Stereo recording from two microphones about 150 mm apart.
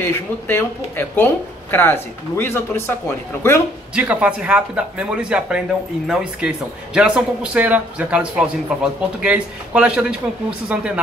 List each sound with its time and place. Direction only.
0.0 s speech: 15° left (ahead or behind)
3.9 s a man's voice: 10° right (ahead or behind)